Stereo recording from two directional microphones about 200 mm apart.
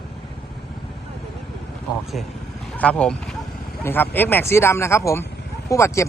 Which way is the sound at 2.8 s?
5° left (ahead or behind).